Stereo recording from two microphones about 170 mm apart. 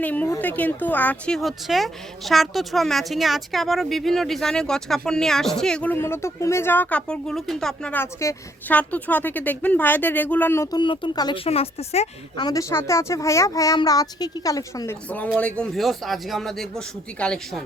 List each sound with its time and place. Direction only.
0.0 s speech: 10° left (ahead or behind)
11.4 s speech: 35° left (ahead or behind)
12.5 s a woman's voice: 20° left (ahead or behind)